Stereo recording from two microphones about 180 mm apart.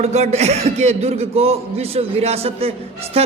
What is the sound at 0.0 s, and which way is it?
Speech, 40° right (ahead or behind).